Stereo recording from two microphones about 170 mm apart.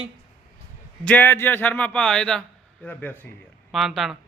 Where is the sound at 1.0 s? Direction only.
10° left (ahead or behind).